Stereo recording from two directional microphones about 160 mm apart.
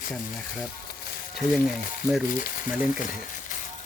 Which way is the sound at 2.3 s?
60° left (ahead or behind).